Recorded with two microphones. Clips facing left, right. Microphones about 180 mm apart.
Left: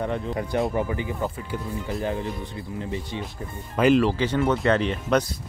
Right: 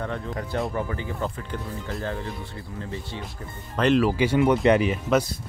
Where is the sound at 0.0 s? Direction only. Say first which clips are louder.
Left 3 dB; 15° left (ahead or behind).